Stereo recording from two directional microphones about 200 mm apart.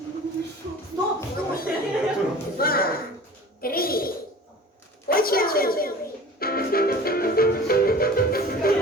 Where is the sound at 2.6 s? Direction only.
45° left (ahead or behind).